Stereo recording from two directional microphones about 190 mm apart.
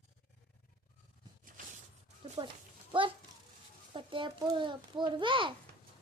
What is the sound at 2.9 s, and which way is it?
A child's voice, 25° right (ahead or behind).